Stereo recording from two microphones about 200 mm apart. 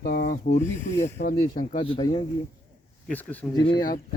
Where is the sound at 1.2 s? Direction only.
45° left (ahead or behind).